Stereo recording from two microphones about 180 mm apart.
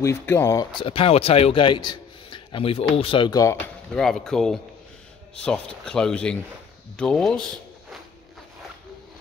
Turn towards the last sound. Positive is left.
turn(degrees=5)  # may be behind; listen again after turning